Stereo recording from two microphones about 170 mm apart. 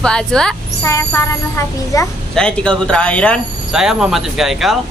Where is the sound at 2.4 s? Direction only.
5° left (ahead or behind).